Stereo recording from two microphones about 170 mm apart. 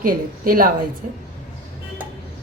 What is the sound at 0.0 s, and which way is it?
Speech, 55° right (ahead or behind).